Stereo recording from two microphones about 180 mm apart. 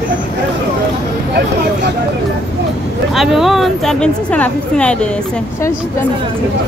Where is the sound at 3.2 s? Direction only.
Centre (ahead or behind).